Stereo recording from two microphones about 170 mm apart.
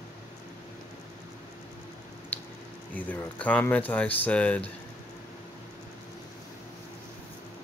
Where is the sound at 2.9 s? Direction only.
10° left (ahead or behind).